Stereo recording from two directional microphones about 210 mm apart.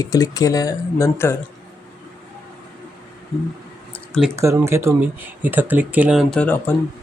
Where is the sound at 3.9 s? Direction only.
5° left (ahead or behind).